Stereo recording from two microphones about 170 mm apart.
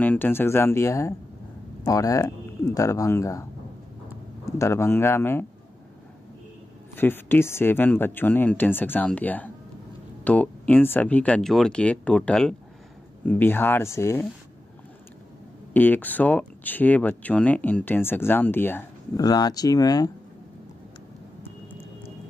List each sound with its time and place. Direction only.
0.0 s speech: 10° left (ahead or behind)
4.5 s speech: 15° left (ahead or behind)
7.0 s speech: 10° left (ahead or behind)
15.7 s speech: 10° left (ahead or behind)
19.2 s speech: 20° left (ahead or behind)